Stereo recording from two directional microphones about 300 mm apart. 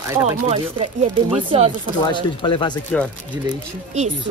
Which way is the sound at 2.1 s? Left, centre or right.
Centre.